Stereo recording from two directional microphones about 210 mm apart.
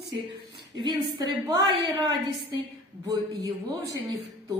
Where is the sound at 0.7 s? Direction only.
20° right (ahead or behind).